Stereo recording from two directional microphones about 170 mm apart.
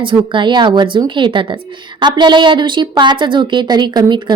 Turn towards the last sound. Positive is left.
turn(degrees=-25)  # may be behind; listen again after turning